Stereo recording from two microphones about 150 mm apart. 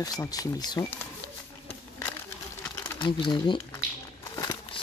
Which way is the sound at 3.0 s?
30° left (ahead or behind).